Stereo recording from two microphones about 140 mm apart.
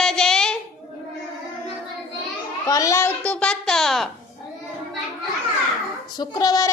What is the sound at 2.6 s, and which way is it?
Child singing, 25° left (ahead or behind).